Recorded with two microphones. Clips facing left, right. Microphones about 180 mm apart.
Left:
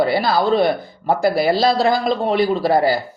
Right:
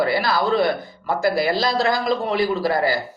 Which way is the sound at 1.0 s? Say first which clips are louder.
Left 4 dB; 30° left (ahead or behind).